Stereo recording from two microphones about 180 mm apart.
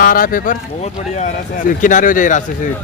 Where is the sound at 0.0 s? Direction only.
50° left (ahead or behind).